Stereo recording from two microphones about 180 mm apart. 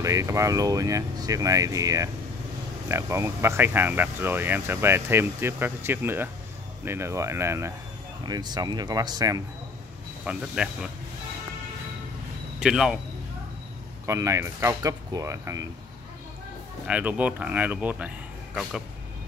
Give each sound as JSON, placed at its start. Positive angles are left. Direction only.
{"t": 0.0, "sound": "speech", "side_deg": -15}
{"t": 10.2, "sound": "speech", "side_deg": -5}
{"t": 12.5, "sound": "speech", "side_deg": -5}
{"t": 14.0, "sound": "speech", "side_deg": -15}
{"t": 16.8, "sound": "speech", "side_deg": -5}